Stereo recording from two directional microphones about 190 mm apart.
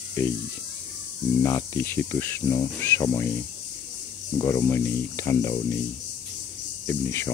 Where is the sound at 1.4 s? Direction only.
15° left (ahead or behind).